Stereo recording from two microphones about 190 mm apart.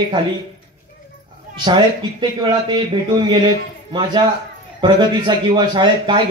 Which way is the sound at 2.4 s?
25° right (ahead or behind).